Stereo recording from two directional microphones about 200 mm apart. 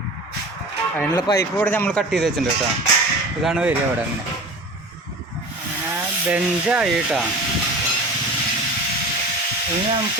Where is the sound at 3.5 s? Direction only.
5° right (ahead or behind).